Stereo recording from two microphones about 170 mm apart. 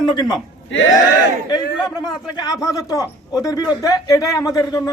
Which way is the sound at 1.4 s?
25° left (ahead or behind).